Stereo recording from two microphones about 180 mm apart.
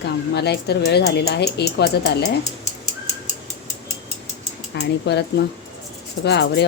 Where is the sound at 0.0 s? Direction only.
65° left (ahead or behind).